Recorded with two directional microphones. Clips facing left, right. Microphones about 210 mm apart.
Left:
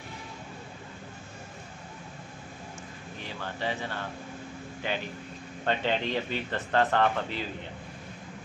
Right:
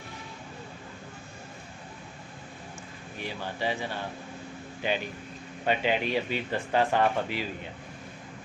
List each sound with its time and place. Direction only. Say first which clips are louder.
3.2 s a man's voice: right 3 dB; 10° right (ahead or behind)